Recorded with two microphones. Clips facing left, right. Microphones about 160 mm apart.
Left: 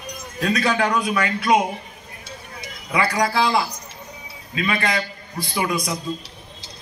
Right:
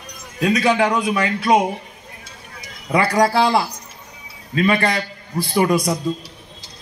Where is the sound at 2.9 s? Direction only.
40° right (ahead or behind).